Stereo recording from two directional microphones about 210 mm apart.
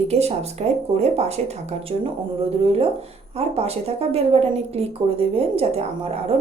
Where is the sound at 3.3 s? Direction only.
30° right (ahead or behind).